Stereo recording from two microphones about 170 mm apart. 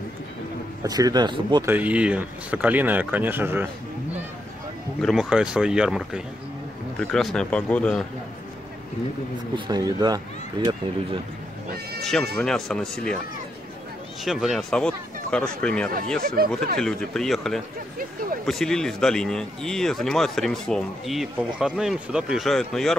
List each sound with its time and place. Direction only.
0.8 s speech: 25° right (ahead or behind)
1.7 s speech: 10° right (ahead or behind)
5.0 s speech: 5° right (ahead or behind)
9.7 s speech: 25° right (ahead or behind)
12.0 s speech: centre (ahead or behind)
14.2 s speech: centre (ahead or behind)
16.2 s speech: 60° right (ahead or behind)
16.7 s speech: 5° left (ahead or behind)
17.9 s speech: 55° right (ahead or behind)
18.4 s speech: centre (ahead or behind)